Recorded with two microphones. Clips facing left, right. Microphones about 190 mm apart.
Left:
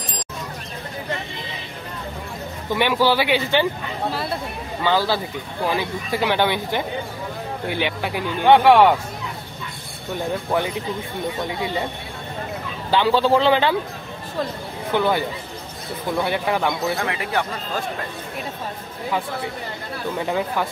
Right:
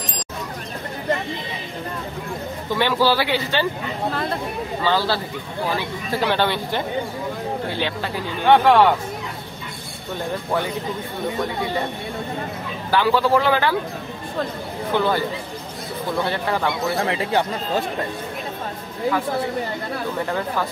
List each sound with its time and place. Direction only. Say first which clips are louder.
2.7 s speech: even; 15° left (ahead or behind)
4.8 s speech: left 2 dB; 15° left (ahead or behind)
12.9 s a man's voice: left 1 dB; 25° left (ahead or behind)
15.0 s speech: left 1 dB; 15° left (ahead or behind)
16.3 s speech: left 1 dB; 10° left (ahead or behind)
17.0 s speech: right 3 dB; 25° right (ahead or behind)